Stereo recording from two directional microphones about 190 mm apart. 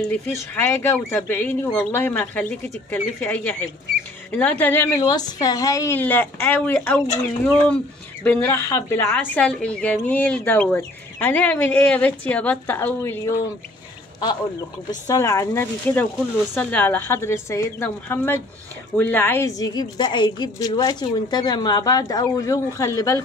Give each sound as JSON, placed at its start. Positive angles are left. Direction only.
{"t": 0.7, "sound": "a woman's voice", "side_deg": 10}